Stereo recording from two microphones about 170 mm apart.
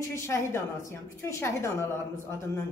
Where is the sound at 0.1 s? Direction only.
15° left (ahead or behind).